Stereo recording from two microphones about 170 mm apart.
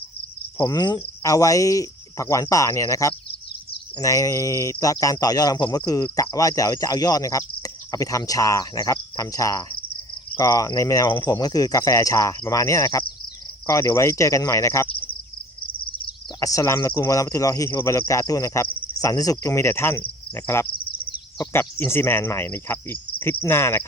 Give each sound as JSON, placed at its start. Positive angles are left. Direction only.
{"t": 0.7, "sound": "speech", "side_deg": 25}
{"t": 13.7, "sound": "cricket", "side_deg": 15}
{"t": 16.4, "sound": "speech", "side_deg": 20}
{"t": 18.9, "sound": "cricket", "side_deg": 20}